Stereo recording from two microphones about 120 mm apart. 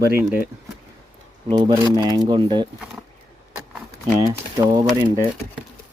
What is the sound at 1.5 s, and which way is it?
Speech, 35° right (ahead or behind).